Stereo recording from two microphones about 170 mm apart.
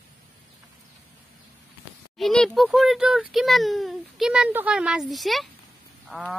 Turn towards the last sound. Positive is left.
turn(degrees=0)  # may be behind; listen again after turning